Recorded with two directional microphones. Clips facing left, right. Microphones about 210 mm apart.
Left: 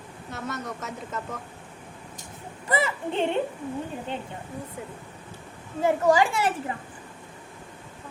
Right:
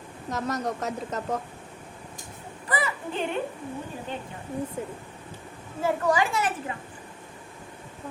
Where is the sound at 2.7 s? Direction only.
25° left (ahead or behind).